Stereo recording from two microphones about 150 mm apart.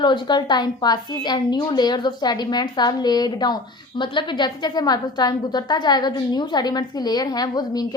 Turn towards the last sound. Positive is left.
turn(degrees=25)  # may be behind; listen again after turning